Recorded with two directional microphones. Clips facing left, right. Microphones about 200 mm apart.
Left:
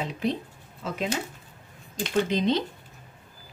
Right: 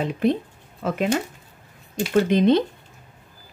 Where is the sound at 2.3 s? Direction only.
55° right (ahead or behind).